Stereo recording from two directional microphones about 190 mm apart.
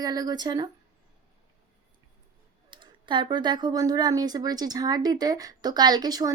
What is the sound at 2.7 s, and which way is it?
Speech, 25° right (ahead or behind).